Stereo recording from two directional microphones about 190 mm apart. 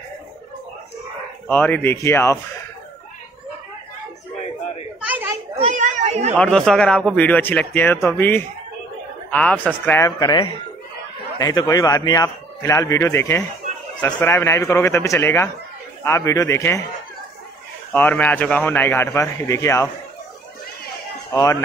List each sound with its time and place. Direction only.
1.5 s a man's voice: 10° left (ahead or behind)
5.0 s children playing: 10° right (ahead or behind)
5.7 s children playing: 40° right (ahead or behind)
6.3 s a man's voice: 5° left (ahead or behind)
17.9 s a man's voice: 10° left (ahead or behind)
21.3 s a man's voice: 15° left (ahead or behind)